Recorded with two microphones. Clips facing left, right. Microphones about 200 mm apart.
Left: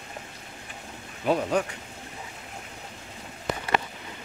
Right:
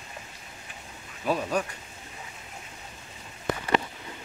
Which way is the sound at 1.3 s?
20° left (ahead or behind).